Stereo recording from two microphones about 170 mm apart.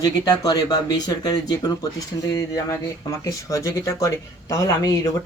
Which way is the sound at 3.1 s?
20° left (ahead or behind).